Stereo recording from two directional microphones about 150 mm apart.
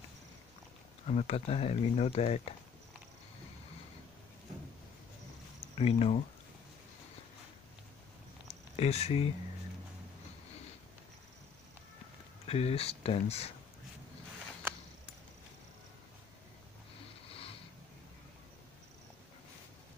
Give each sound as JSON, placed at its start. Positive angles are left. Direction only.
{"t": 1.0, "sound": "speech", "side_deg": 45}
{"t": 5.8, "sound": "speech", "side_deg": 40}
{"t": 8.7, "sound": "speech", "side_deg": 45}
{"t": 12.4, "sound": "speech", "side_deg": 40}
{"t": 17.3, "sound": "a sound", "side_deg": 40}